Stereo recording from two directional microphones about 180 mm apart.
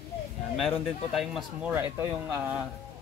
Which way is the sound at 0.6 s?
Centre (ahead or behind).